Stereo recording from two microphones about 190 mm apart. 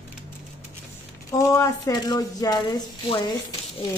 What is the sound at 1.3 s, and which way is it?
Speech, 15° left (ahead or behind).